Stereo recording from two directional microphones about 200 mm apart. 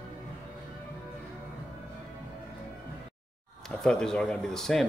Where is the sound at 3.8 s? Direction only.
5° left (ahead or behind).